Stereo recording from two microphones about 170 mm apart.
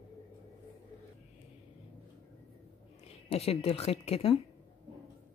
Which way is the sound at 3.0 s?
35° left (ahead or behind).